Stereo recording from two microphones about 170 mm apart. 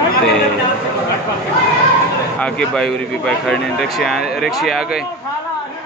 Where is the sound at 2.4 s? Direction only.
5° left (ahead or behind).